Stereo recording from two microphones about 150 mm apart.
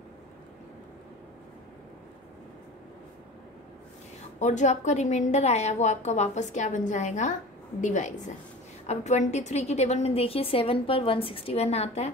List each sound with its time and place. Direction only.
4.4 s a woman's voice: 50° left (ahead or behind)